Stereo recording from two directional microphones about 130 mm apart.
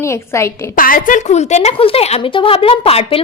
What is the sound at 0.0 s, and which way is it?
Speech, 20° left (ahead or behind).